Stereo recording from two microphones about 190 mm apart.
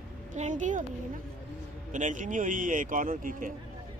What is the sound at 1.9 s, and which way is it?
Speech, 40° right (ahead or behind).